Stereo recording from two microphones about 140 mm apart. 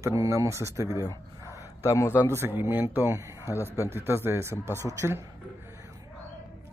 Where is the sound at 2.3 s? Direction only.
15° right (ahead or behind).